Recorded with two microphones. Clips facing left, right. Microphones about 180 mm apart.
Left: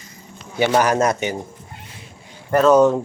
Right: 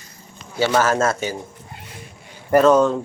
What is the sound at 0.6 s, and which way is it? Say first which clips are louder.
Speech: left 1 dB; 15° left (ahead or behind).